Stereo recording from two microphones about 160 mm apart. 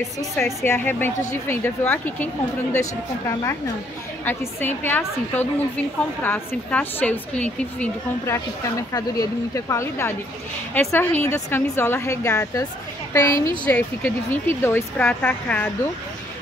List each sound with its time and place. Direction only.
0.7 s a woman's voice: 15° left (ahead or behind)
8.6 s a woman's voice: 20° left (ahead or behind)